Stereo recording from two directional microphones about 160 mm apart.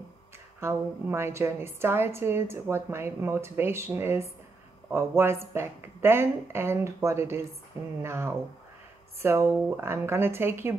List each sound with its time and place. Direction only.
0.6 s a woman's voice: 15° right (ahead or behind)